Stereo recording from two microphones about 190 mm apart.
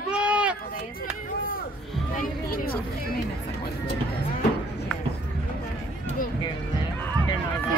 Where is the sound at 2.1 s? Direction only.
50° left (ahead or behind).